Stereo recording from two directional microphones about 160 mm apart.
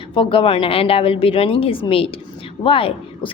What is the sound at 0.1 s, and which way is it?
A woman's voice, 35° left (ahead or behind).